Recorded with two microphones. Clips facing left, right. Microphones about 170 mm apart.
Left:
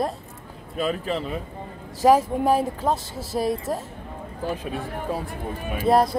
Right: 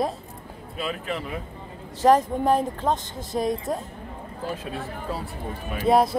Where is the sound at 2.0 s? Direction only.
10° left (ahead or behind).